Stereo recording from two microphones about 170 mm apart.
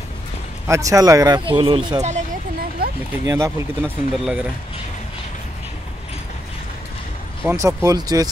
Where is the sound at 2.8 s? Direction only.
65° right (ahead or behind).